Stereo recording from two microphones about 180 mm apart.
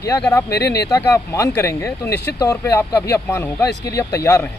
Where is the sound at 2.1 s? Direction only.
70° left (ahead or behind).